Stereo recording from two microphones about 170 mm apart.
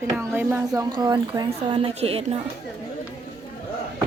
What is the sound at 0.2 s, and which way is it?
A woman's voice, 15° right (ahead or behind).